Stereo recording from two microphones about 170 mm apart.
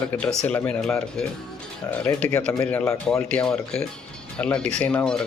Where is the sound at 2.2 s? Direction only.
20° left (ahead or behind).